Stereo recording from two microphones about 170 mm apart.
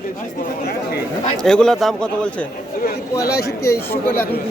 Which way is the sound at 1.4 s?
5° left (ahead or behind).